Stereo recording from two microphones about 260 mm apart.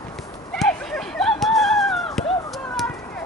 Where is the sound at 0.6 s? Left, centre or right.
Centre.